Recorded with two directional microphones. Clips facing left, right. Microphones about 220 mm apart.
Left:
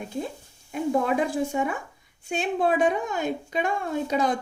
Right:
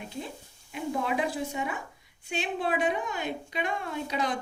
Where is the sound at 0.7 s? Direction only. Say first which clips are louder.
Left 7 dB; 45° left (ahead or behind).